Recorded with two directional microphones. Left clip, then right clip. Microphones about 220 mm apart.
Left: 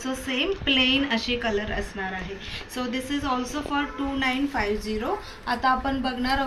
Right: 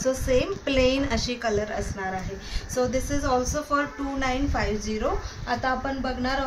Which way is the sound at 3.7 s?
30° right (ahead or behind).